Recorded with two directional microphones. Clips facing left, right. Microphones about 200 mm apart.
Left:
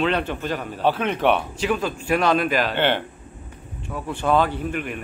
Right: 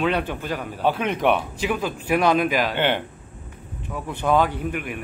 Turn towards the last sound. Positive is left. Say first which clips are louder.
# left 1 dB
turn(degrees=-10)  # may be behind; listen again after turning